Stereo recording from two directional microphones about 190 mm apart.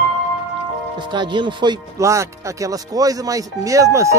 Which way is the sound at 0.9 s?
25° right (ahead or behind).